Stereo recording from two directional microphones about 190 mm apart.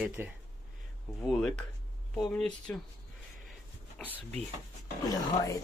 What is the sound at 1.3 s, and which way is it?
Speech, centre (ahead or behind).